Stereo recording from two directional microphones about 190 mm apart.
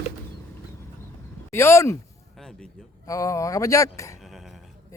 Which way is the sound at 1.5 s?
15° left (ahead or behind).